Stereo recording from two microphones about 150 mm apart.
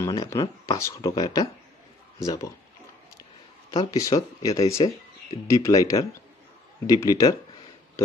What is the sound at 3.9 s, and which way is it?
Speech, 20° left (ahead or behind).